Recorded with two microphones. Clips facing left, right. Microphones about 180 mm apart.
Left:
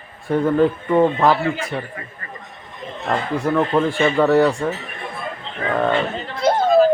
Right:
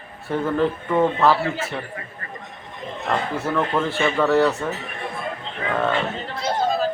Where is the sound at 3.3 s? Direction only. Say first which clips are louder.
Left 8 dB; 15° left (ahead or behind).